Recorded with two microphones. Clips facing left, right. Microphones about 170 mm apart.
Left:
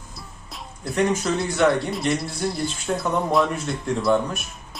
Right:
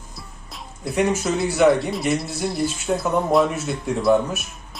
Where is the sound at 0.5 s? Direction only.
5° right (ahead or behind).